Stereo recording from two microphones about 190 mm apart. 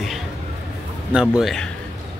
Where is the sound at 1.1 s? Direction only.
Centre (ahead or behind).